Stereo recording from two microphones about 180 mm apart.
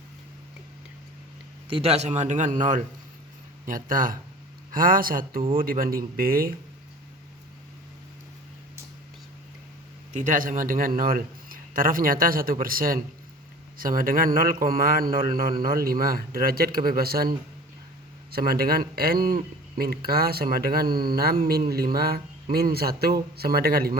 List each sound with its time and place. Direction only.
1.6 s a man's voice: 30° right (ahead or behind); by 6.5 s 55° right (ahead or behind)
10.1 s a man's voice: 45° right (ahead or behind)